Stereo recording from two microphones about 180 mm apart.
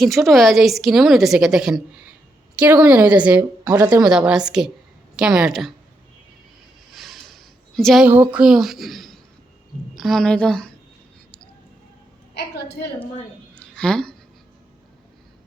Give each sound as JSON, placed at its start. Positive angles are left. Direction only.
{"t": 0.0, "sound": "a woman's voice", "side_deg": 0}
{"t": 3.7, "sound": "speech", "side_deg": -20}
{"t": 4.1, "sound": "a woman's voice", "side_deg": -5}
{"t": 6.9, "sound": "a sound", "side_deg": 0}
{"t": 8.0, "sound": "a woman's voice", "side_deg": -10}
{"t": 12.3, "sound": "a woman's voice", "side_deg": 65}
{"t": 13.6, "sound": "a sound", "side_deg": 5}